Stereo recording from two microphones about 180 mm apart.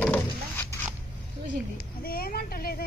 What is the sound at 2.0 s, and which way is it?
Speech, 55° left (ahead or behind).